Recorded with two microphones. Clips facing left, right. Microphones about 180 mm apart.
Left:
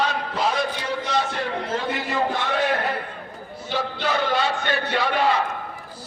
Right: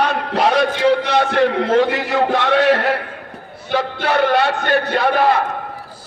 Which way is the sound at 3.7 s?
65° right (ahead or behind).